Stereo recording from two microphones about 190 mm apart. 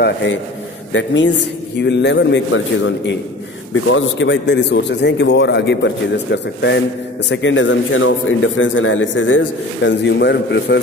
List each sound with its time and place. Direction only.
0.0 s a man's voice: 70° left (ahead or behind)